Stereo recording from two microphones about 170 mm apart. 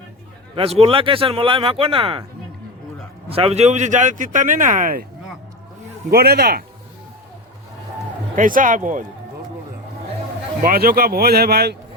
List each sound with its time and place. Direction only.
0.5 s speech: 35° right (ahead or behind)
3.2 s a man's voice: 35° right (ahead or behind); by 5.0 s 55° right (ahead or behind)
6.1 s speech: 65° right (ahead or behind)
8.4 s a man's voice: 50° right (ahead or behind)
10.6 s speech: 55° right (ahead or behind)